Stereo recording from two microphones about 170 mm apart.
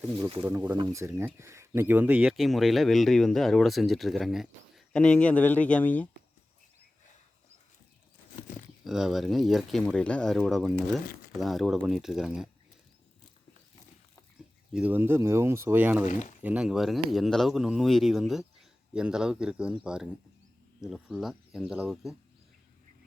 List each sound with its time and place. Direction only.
0.8 s speech: 20° right (ahead or behind); by 6.1 s 10° left (ahead or behind)
8.8 s speech: centre (ahead or behind)
14.7 s speech: 10° right (ahead or behind)